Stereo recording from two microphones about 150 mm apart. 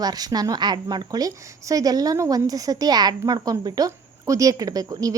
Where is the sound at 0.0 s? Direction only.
25° right (ahead or behind).